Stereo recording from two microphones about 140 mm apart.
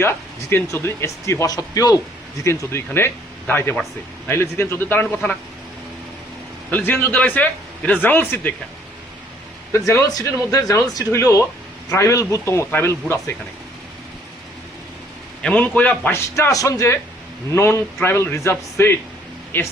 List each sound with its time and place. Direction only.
0.0 s a man's voice: 15° left (ahead or behind)
6.7 s a man's voice: 15° left (ahead or behind)
9.7 s speech: 20° left (ahead or behind)
15.4 s a man's voice: 10° left (ahead or behind)